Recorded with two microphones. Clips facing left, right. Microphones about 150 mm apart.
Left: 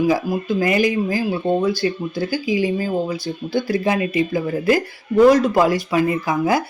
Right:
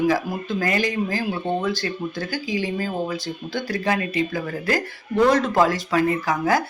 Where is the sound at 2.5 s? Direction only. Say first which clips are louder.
Left 4 dB; 15° left (ahead or behind).